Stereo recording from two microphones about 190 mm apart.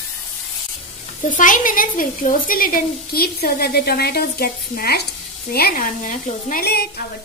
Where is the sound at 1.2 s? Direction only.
45° left (ahead or behind).